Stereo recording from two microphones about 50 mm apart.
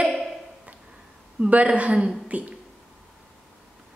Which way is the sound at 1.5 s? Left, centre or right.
Right.